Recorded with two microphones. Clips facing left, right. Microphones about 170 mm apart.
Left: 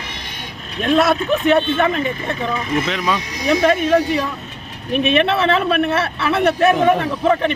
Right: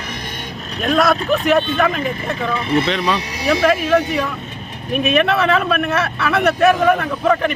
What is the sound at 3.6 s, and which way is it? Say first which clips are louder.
Speech: even; 30° left (ahead or behind).